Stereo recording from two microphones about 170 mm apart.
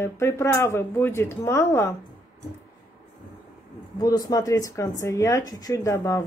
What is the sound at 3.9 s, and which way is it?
Speech, 20° left (ahead or behind).